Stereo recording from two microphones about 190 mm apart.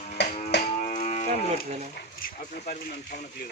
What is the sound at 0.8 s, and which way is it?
Livestock, 40° left (ahead or behind).